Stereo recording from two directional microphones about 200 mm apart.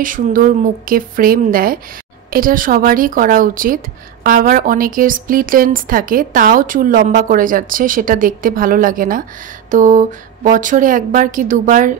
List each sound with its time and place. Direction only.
0.0 s speech: 45° right (ahead or behind)